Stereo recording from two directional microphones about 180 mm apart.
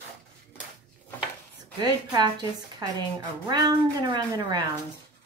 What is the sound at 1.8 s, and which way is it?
A woman's voice, 25° right (ahead or behind).